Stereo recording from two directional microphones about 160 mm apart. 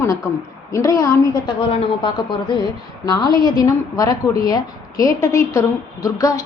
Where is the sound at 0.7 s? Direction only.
20° left (ahead or behind).